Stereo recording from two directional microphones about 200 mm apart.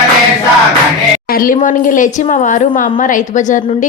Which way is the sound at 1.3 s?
45° left (ahead or behind).